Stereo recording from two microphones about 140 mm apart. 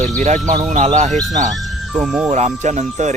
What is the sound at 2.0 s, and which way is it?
Speech, 10° right (ahead or behind).